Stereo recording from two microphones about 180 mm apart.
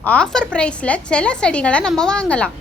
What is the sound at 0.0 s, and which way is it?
A woman's voice, 5° left (ahead or behind).